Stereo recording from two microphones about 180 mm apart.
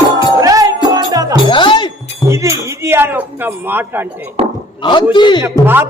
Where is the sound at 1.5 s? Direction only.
25° left (ahead or behind).